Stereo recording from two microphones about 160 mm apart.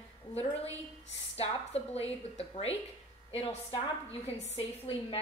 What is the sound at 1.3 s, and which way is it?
A woman's voice, 40° left (ahead or behind).